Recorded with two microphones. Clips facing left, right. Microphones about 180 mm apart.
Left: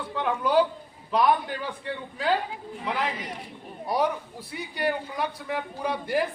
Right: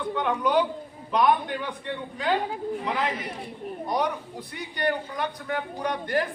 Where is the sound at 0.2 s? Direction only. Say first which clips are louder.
Left 1 dB; 5° left (ahead or behind).